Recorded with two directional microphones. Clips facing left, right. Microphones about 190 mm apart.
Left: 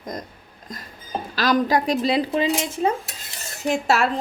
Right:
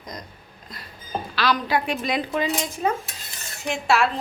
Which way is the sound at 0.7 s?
45° left (ahead or behind).